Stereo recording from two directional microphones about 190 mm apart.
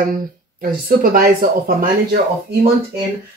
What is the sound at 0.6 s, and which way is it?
Speech, 50° right (ahead or behind).